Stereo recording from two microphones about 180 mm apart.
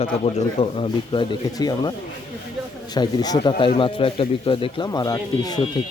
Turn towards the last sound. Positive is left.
turn(degrees=20)  # may be behind; listen again after turning